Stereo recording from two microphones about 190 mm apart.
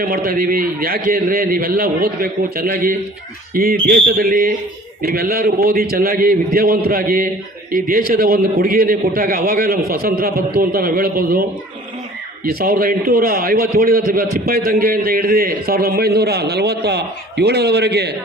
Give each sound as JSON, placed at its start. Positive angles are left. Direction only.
{"t": 0.0, "sound": "a man's voice", "side_deg": -50}
{"t": 12.5, "sound": "a man's voice", "side_deg": -50}